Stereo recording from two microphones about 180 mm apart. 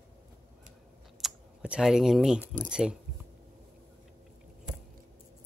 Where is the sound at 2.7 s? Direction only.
5° right (ahead or behind).